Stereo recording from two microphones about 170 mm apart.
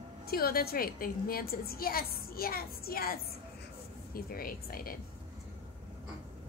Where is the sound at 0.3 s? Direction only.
65° left (ahead or behind).